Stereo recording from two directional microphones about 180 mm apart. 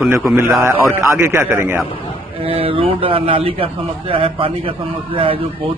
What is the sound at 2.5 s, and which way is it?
A man's voice, 30° right (ahead or behind).